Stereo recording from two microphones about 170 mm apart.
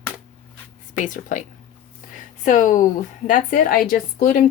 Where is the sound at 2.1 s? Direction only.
50° left (ahead or behind).